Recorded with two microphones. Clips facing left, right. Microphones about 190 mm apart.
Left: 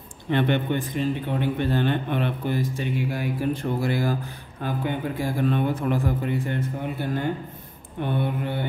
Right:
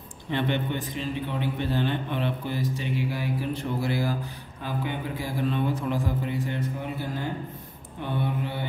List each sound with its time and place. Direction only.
0.3 s a man's voice: 60° left (ahead or behind)